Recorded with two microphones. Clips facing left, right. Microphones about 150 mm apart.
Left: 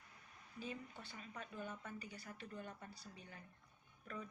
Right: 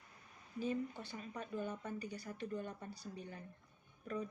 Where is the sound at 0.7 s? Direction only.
40° right (ahead or behind).